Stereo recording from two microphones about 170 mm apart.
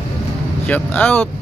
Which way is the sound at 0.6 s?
10° left (ahead or behind).